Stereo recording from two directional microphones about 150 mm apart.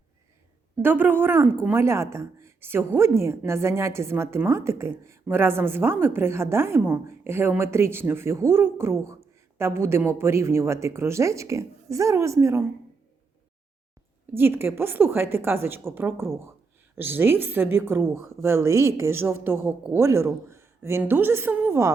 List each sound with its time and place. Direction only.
0.8 s a woman's voice: 15° right (ahead or behind)
14.3 s a woman's voice: 15° right (ahead or behind)